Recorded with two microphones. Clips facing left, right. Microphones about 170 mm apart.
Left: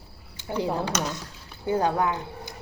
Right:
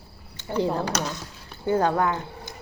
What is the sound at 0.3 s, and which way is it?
Speech, 15° left (ahead or behind).